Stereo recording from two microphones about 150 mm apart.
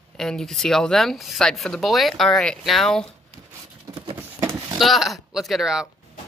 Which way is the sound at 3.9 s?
30° right (ahead or behind).